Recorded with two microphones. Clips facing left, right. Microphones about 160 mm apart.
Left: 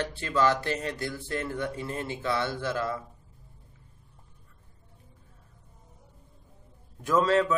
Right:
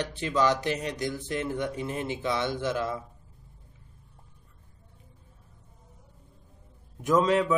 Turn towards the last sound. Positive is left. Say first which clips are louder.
# right 1 dB
turn(degrees=-15)  # may be behind; listen again after turning